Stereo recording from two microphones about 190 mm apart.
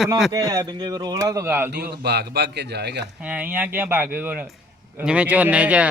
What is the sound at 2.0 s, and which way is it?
A man's voice, 60° right (ahead or behind).